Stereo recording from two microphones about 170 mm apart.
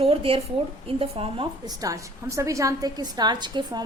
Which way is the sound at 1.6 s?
20° right (ahead or behind).